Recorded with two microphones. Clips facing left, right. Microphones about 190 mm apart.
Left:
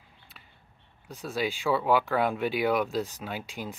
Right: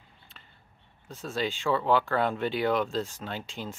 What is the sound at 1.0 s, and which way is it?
Speech, 15° left (ahead or behind).